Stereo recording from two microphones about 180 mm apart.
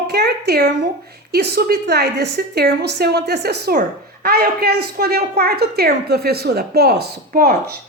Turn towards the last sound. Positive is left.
turn(degrees=-60)  # may be behind; listen again after turning